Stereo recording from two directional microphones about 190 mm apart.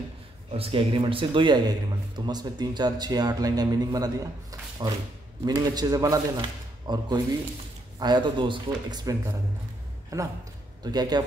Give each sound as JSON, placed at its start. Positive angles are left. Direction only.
{"t": 0.5, "sound": "a man's voice", "side_deg": -30}
{"t": 10.1, "sound": "a man's voice", "side_deg": -15}